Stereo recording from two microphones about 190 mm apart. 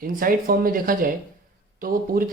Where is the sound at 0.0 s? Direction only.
50° right (ahead or behind).